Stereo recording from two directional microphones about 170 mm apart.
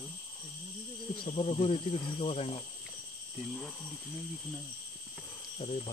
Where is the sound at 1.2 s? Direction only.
35° left (ahead or behind).